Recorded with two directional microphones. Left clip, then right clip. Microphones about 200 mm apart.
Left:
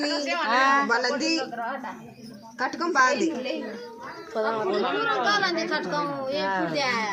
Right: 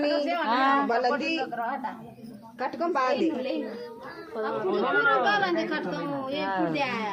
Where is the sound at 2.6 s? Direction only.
40° left (ahead or behind).